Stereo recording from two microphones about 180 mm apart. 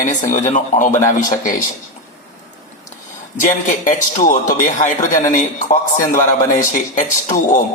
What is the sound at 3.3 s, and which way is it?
Speech, 45° left (ahead or behind).